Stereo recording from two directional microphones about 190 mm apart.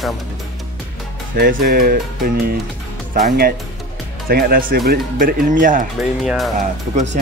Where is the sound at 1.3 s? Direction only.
50° right (ahead or behind).